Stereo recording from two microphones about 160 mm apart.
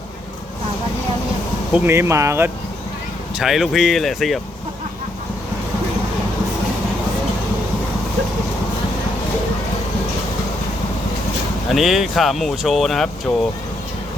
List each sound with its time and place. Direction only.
1.7 s speech: 15° right (ahead or behind)
3.3 s speech: centre (ahead or behind)
11.7 s speech: centre (ahead or behind)
13.3 s speech: 15° left (ahead or behind)